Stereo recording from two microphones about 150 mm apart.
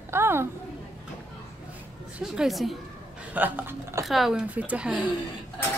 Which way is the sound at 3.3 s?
10° right (ahead or behind).